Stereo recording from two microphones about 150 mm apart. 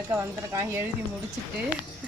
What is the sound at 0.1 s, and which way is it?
Speech, 20° right (ahead or behind).